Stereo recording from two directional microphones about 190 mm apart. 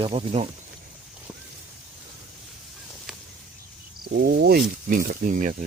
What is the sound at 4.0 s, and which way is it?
Speech, 50° right (ahead or behind).